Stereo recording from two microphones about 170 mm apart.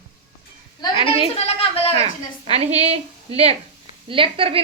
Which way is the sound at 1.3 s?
35° left (ahead or behind).